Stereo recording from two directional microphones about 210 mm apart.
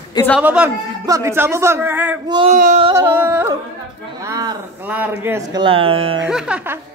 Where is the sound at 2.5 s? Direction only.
35° right (ahead or behind).